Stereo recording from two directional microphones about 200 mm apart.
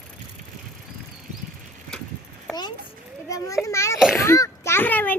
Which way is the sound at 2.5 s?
20° left (ahead or behind).